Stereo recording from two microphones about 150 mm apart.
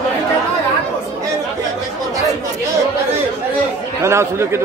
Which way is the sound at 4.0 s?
20° right (ahead or behind).